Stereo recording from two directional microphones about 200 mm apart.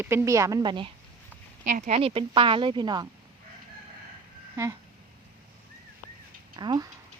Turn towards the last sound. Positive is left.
turn(degrees=-20)  # may be behind; listen again after turning